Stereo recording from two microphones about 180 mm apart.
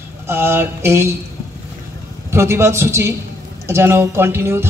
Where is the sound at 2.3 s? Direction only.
15° right (ahead or behind).